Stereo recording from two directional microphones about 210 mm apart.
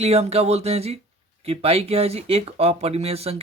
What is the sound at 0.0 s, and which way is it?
Speech, 30° right (ahead or behind).